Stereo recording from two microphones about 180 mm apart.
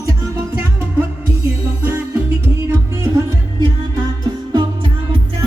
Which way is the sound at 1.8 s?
15° right (ahead or behind).